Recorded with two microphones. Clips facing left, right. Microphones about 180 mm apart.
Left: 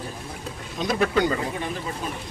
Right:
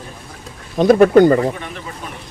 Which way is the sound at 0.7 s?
50° right (ahead or behind).